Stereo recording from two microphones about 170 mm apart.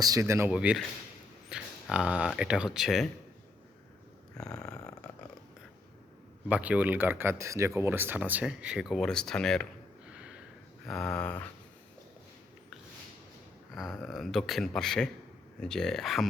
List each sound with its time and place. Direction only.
0.0 s speech: 20° right (ahead or behind); by 3.1 s centre (ahead or behind)
4.4 s speech: 5° left (ahead or behind)
6.5 s speech: 10° right (ahead or behind)
10.2 s a sound: 5° right (ahead or behind)
10.8 s speech: 5° left (ahead or behind)
13.7 s speech: centre (ahead or behind)